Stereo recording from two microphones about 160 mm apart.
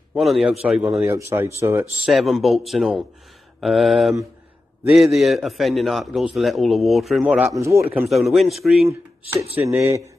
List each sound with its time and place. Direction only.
0.1 s a man's voice: centre (ahead or behind)
0.9 s speech: 20° right (ahead or behind)
2.0 s a man's voice: centre (ahead or behind)
7.5 s speech: 20° right (ahead or behind)
7.9 s a man's voice: 5° right (ahead or behind)
8.8 s speech: 20° right (ahead or behind)